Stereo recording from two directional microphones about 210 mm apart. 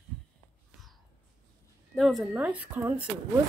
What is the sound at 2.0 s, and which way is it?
Speech, centre (ahead or behind).